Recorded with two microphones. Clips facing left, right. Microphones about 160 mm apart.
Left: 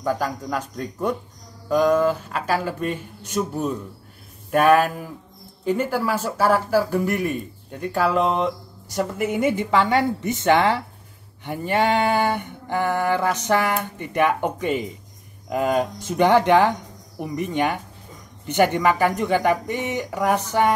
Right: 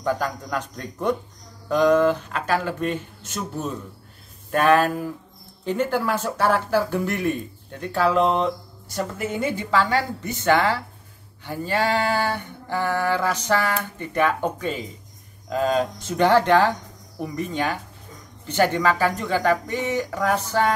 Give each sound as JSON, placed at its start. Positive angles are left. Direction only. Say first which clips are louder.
{"t": 0.0, "sound": "speech", "louder": "left 1 dB", "side_deg": 5}
{"t": 1.7, "sound": "mantra", "louder": "right 1 dB", "side_deg": 5}
{"t": 8.9, "sound": "a woman's voice", "louder": "left 4 dB", "side_deg": 15}
{"t": 11.4, "sound": "mantra", "louder": "left 2 dB", "side_deg": 20}